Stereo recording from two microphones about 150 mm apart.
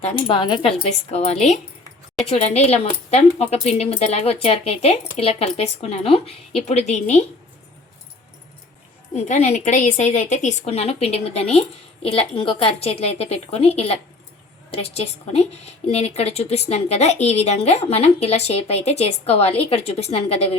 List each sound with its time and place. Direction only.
0.0 s a woman's voice: 35° left (ahead or behind)
1.1 s a woman's voice: 45° left (ahead or behind)
9.1 s a woman's voice: 50° left (ahead or behind)